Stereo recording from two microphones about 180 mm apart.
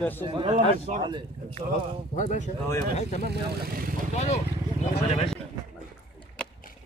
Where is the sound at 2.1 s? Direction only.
40° left (ahead or behind).